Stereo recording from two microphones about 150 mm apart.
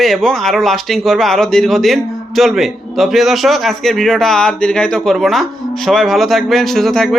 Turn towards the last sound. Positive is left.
turn(degrees=0)  # may be behind; listen again after turning